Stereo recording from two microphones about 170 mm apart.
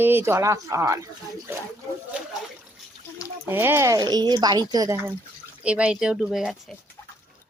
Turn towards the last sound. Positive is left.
turn(degrees=0)  # may be behind; listen again after turning